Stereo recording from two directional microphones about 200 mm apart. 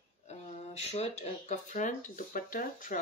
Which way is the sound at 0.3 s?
35° left (ahead or behind).